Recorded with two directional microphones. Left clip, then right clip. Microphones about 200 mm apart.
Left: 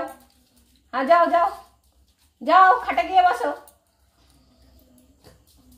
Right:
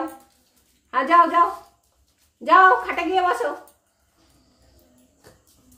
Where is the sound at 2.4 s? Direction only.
20° right (ahead or behind).